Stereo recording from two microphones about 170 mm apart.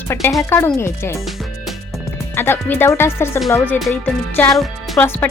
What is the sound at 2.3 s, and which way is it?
Speech, 15° left (ahead or behind).